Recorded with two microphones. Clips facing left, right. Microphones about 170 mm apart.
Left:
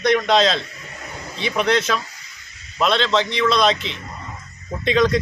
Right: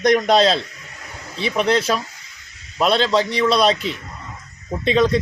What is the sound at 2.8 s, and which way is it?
Speech, 40° right (ahead or behind).